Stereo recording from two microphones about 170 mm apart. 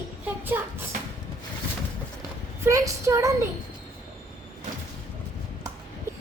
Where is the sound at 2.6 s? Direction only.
20° right (ahead or behind).